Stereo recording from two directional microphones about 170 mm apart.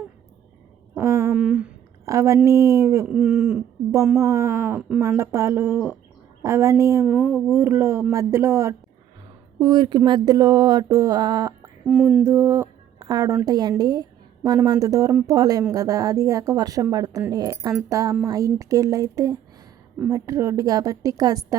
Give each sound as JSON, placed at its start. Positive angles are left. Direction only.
{"t": 0.9, "sound": "a sound", "side_deg": -15}
{"t": 1.3, "sound": "speech", "side_deg": -5}
{"t": 2.0, "sound": "speech", "side_deg": -15}
{"t": 4.2, "sound": "speech", "side_deg": -15}
{"t": 7.1, "sound": "a woman's voice", "side_deg": -5}
{"t": 11.9, "sound": "speech", "side_deg": -5}
{"t": 12.2, "sound": "a sound", "side_deg": -15}
{"t": 13.4, "sound": "a woman's voice", "side_deg": -25}